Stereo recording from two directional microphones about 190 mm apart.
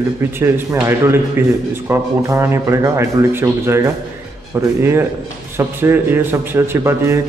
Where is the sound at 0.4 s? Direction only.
15° right (ahead or behind).